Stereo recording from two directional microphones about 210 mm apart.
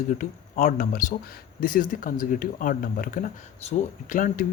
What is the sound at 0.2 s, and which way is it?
Speech, 40° left (ahead or behind).